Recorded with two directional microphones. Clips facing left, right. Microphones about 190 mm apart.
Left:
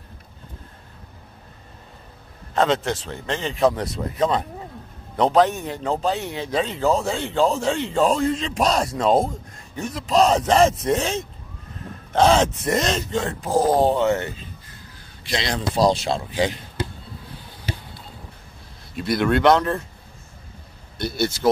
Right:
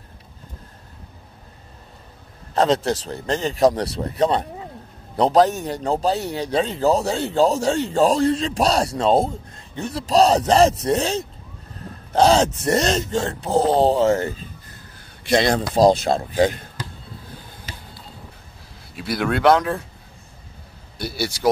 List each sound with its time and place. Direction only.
2.5 s a man's voice: 35° right (ahead or behind)
15.2 s speech: 50° right (ahead or behind)
18.9 s speech: 5° right (ahead or behind)
21.0 s speech: 10° right (ahead or behind)